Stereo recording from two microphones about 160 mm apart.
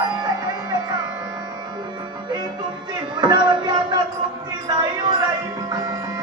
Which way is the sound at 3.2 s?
25° right (ahead or behind).